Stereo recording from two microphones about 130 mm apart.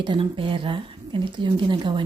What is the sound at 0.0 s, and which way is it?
A woman's voice, 40° right (ahead or behind).